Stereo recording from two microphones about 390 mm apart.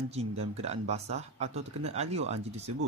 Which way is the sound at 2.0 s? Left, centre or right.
Centre.